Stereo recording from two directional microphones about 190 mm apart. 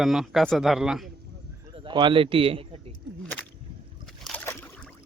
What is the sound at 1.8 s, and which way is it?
Speech, 25° right (ahead or behind).